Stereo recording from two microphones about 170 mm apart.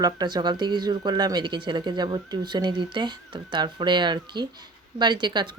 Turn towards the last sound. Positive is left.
turn(degrees=-25)  # may be behind; listen again after turning